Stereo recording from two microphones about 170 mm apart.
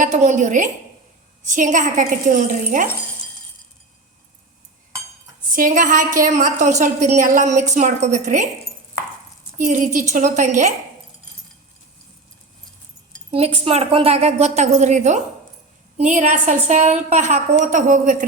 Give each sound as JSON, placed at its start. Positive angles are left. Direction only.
{"t": 0.0, "sound": "a woman's voice", "side_deg": -45}
{"t": 5.5, "sound": "a woman's voice", "side_deg": -50}
{"t": 9.6, "sound": "a woman's voice", "side_deg": -50}
{"t": 13.3, "sound": "a woman's voice", "side_deg": -35}